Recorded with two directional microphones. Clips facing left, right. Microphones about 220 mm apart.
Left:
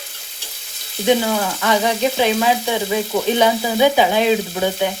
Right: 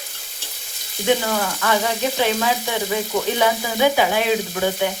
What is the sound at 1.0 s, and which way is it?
Frying, 15° left (ahead or behind).